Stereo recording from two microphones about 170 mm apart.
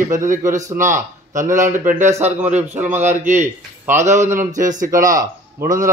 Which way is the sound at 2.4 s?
10° right (ahead or behind).